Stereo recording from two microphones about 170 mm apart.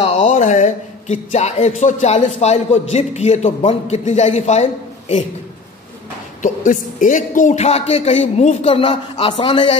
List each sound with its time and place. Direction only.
0.0 s a man's voice: 40° left (ahead or behind)
6.4 s a man's voice: 50° left (ahead or behind); by 9.8 s 30° left (ahead or behind)